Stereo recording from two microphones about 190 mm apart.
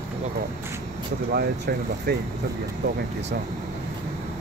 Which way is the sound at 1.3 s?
55° right (ahead or behind).